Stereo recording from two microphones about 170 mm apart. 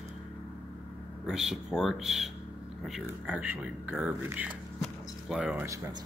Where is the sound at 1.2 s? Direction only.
5° right (ahead or behind).